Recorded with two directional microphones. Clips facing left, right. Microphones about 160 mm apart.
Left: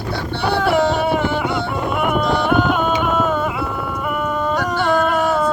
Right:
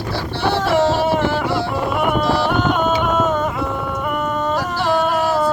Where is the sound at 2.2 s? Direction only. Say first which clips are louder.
Left 1 dB; 5° right (ahead or behind).